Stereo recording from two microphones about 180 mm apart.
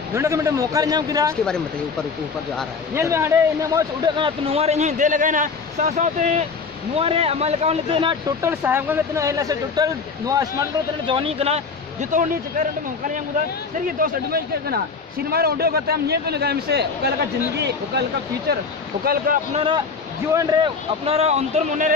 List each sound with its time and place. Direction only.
0.1 s speech: 15° right (ahead or behind)
1.3 s speech: 5° left (ahead or behind)
2.9 s speech: 15° right (ahead or behind)
8.4 s speech: 10° right (ahead or behind)
11.1 s speech: 30° right (ahead or behind)
13.9 s a man's voice: 55° right (ahead or behind)
19.0 s speech: 50° right (ahead or behind)
20.3 s speech: 30° right (ahead or behind)